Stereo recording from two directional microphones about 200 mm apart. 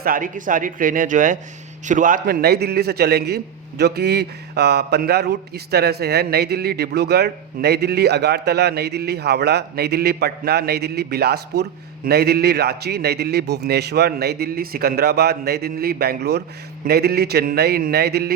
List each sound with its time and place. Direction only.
0.0 s a man's voice: 45° right (ahead or behind)